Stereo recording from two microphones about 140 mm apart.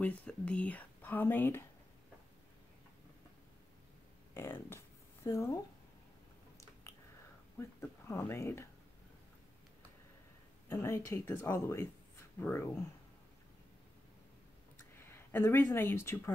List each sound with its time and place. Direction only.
0.0 s speech: 10° left (ahead or behind)
4.3 s a sound: 15° left (ahead or behind)
7.6 s speech: 15° left (ahead or behind)
10.7 s speech: 20° left (ahead or behind)
15.0 s speech: 15° left (ahead or behind)